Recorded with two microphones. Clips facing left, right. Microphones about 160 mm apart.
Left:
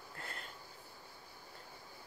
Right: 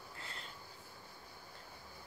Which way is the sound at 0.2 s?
50° left (ahead or behind).